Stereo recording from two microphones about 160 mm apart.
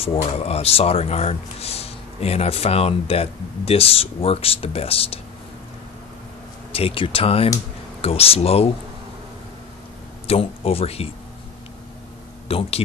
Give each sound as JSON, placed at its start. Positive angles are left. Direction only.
{"t": 0.2, "sound": "speech", "side_deg": 40}
{"t": 6.7, "sound": "speech", "side_deg": 35}
{"t": 10.2, "sound": "speech", "side_deg": 40}
{"t": 12.4, "sound": "speech", "side_deg": 40}